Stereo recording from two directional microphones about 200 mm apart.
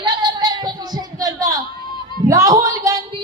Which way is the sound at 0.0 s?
25° right (ahead or behind).